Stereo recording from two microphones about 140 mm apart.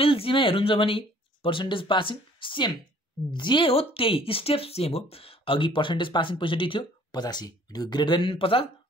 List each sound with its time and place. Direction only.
0.0 s speech: 40° left (ahead or behind)